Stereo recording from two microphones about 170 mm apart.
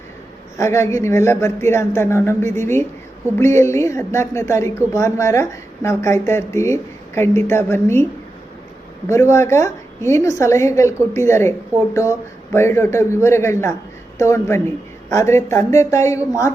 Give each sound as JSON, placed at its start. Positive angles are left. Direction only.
{"t": 0.5, "sound": "a woman's voice", "side_deg": 15}
{"t": 9.0, "sound": "a woman's voice", "side_deg": 15}
{"t": 12.5, "sound": "a woman's voice", "side_deg": 15}